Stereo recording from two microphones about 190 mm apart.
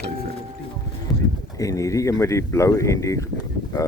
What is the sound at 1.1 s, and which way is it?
Clip-clop, centre (ahead or behind).